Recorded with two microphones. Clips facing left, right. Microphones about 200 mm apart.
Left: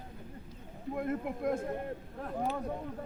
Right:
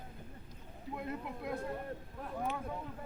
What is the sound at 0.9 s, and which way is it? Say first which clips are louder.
Speech: left 7 dB; 55° left (ahead or behind).